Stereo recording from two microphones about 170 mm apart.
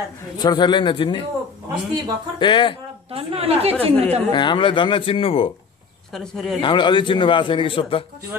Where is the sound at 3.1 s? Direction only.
35° right (ahead or behind).